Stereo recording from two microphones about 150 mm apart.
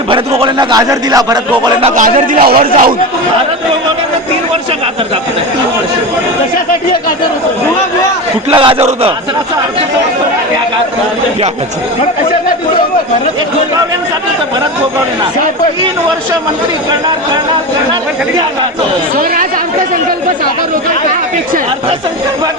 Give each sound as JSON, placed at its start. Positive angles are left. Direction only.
{"t": 0.1, "sound": "speech", "side_deg": -30}
{"t": 2.3, "sound": "a man's voice", "side_deg": -70}
{"t": 8.4, "sound": "a man's voice", "side_deg": -35}